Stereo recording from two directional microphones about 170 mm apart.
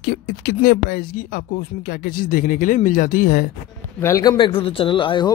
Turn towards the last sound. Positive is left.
turn(degrees=30)  # may be behind; listen again after turning